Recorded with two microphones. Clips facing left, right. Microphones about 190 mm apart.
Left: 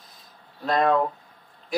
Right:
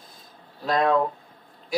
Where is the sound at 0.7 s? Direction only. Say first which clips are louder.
Even; centre (ahead or behind).